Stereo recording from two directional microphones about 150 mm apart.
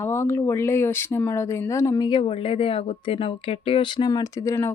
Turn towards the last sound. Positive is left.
turn(degrees=25)  # may be behind; listen again after turning